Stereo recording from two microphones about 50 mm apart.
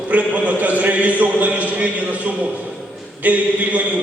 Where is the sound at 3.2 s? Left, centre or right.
Right.